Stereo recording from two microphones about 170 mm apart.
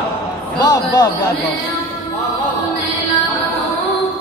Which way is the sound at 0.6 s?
25° left (ahead or behind).